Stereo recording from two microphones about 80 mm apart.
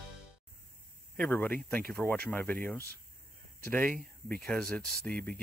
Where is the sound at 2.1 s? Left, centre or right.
Left.